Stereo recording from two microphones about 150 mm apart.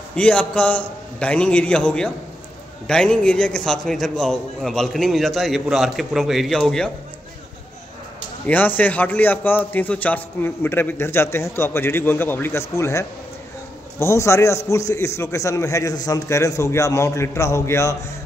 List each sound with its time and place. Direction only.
0.1 s a man's voice: 5° left (ahead or behind)
8.5 s a man's voice: 10° left (ahead or behind)